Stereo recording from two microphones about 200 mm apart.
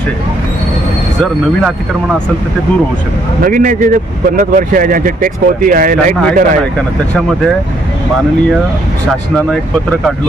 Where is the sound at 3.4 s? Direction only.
40° right (ahead or behind).